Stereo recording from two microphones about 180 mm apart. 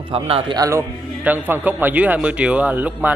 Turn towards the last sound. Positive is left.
turn(degrees=-10)  # may be behind; listen again after turning